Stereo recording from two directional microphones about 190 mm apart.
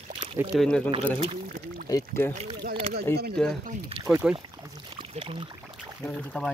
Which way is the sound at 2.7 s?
30° right (ahead or behind).